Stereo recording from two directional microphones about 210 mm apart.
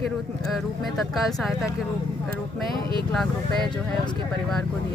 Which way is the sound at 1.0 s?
Centre (ahead or behind).